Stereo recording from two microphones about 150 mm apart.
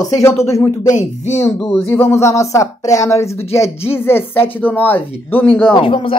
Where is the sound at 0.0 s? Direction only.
20° left (ahead or behind).